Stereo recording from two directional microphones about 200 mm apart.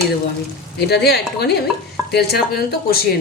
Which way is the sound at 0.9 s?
55° left (ahead or behind).